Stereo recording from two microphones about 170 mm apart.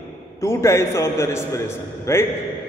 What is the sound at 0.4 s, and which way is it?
A man's voice, 15° left (ahead or behind).